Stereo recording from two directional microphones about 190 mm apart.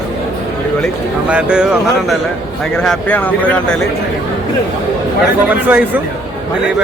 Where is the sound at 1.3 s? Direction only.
5° right (ahead or behind).